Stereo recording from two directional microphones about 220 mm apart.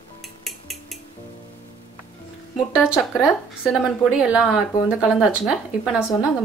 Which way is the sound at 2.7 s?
5° right (ahead or behind).